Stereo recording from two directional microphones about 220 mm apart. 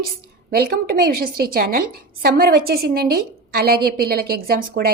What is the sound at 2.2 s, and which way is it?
A woman's voice, 45° right (ahead or behind).